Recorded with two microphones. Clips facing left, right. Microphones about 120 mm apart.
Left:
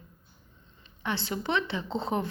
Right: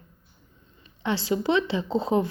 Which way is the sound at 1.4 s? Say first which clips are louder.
Right 4 dB; 20° right (ahead or behind).